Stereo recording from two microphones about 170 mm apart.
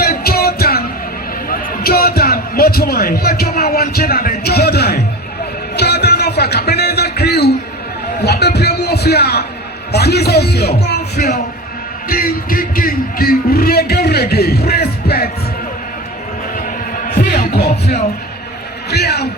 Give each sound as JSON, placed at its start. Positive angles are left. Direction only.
{"t": 0.0, "sound": "music", "side_deg": 65}
{"t": 1.5, "sound": "a sound", "side_deg": 65}
{"t": 8.2, "sound": "music", "side_deg": 75}
{"t": 9.9, "sound": "speech", "side_deg": 75}
{"t": 12.0, "sound": "music", "side_deg": 60}
{"t": 17.2, "sound": "music", "side_deg": 60}
{"t": 17.7, "sound": "music", "side_deg": 40}
{"t": 18.9, "sound": "speech", "side_deg": 70}